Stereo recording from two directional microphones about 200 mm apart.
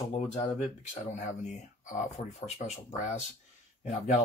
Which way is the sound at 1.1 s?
35° left (ahead or behind).